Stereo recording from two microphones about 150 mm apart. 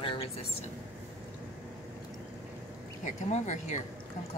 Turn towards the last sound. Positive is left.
turn(degrees=50)  # may be behind; listen again after turning